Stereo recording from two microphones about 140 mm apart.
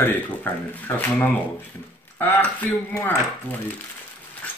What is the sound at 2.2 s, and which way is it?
Speech, 10° left (ahead or behind).